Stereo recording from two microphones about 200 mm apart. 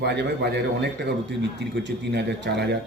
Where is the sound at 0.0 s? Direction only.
55° right (ahead or behind).